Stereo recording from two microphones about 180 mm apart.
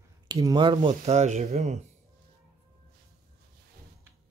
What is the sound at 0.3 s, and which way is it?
Speech, 20° right (ahead or behind).